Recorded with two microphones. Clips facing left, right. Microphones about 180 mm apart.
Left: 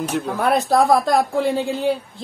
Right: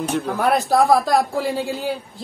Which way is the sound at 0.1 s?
Centre (ahead or behind).